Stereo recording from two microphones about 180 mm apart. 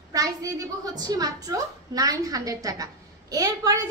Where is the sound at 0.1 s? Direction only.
20° right (ahead or behind).